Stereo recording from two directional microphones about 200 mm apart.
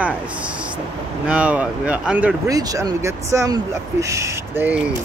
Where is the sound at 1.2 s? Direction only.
5° right (ahead or behind).